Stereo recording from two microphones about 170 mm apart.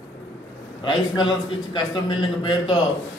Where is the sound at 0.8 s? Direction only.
25° left (ahead or behind).